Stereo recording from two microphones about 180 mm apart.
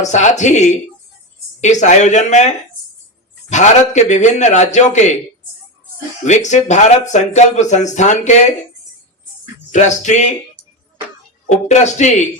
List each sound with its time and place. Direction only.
0.0 s speech: 40° left (ahead or behind)
6.2 s speech: 40° left (ahead or behind)
9.7 s speech: 40° left (ahead or behind)
11.4 s speech: 40° left (ahead or behind)